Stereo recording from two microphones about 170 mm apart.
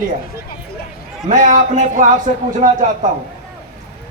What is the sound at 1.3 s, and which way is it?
Speech, 50° right (ahead or behind).